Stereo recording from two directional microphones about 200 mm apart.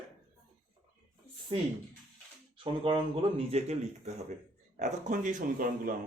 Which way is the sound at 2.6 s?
25° right (ahead or behind).